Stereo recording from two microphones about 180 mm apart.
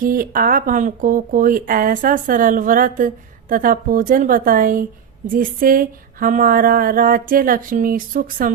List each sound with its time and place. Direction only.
0.0 s speech: 50° right (ahead or behind)